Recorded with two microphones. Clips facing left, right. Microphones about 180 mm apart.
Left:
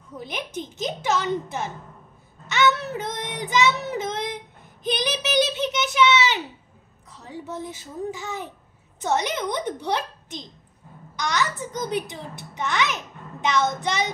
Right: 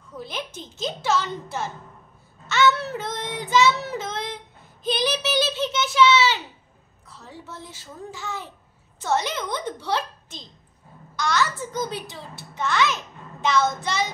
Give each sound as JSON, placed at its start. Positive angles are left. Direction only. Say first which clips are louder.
{"t": 0.2, "sound": "a child's voice", "louder": "left 2 dB", "side_deg": 15}
{"t": 2.4, "sound": "child singing", "louder": "right 1 dB", "side_deg": 15}
{"t": 4.8, "sound": "a child's voice", "louder": "right 1 dB", "side_deg": 15}